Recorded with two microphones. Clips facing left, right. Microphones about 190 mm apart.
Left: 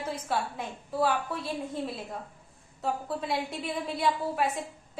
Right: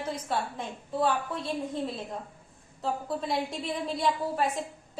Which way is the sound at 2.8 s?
5° left (ahead or behind).